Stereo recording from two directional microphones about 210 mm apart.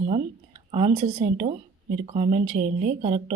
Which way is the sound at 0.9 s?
40° right (ahead or behind).